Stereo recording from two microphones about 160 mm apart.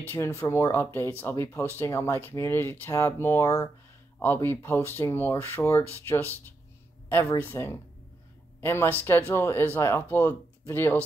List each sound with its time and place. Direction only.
0.0 s speech: 15° left (ahead or behind)